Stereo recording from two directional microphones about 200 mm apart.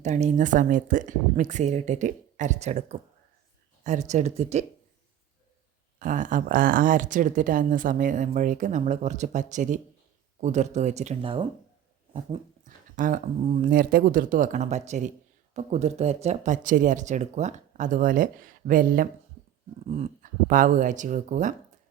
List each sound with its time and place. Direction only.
0.0 s speech: 35° right (ahead or behind)
4.1 s speech: 35° right (ahead or behind)
6.0 s speech: 40° right (ahead or behind)
12.1 s speech: 35° right (ahead or behind)